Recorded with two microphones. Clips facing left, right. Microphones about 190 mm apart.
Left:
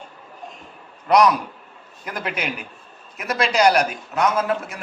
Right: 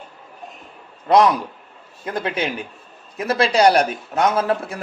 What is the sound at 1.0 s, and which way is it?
A man's voice, 25° right (ahead or behind).